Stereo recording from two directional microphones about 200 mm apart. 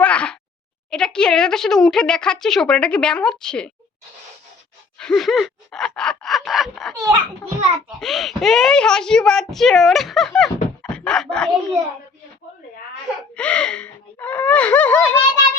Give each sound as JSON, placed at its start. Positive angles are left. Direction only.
{"t": 0.0, "sound": "a sound", "side_deg": 5}
{"t": 0.9, "sound": "speech", "side_deg": 5}
{"t": 4.9, "sound": "gasp", "side_deg": 5}
{"t": 6.9, "sound": "a child's voice", "side_deg": -15}
{"t": 7.9, "sound": "speech", "side_deg": 0}
{"t": 13.3, "sound": "speech", "side_deg": 5}